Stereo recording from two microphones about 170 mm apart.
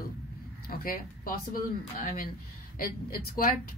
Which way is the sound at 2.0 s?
55° left (ahead or behind).